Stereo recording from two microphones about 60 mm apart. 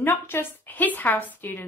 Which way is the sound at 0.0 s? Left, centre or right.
Left.